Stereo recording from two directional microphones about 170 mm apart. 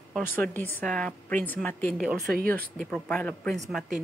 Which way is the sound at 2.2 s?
60° right (ahead or behind).